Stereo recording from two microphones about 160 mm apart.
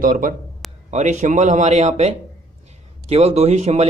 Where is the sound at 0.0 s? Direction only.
55° right (ahead or behind).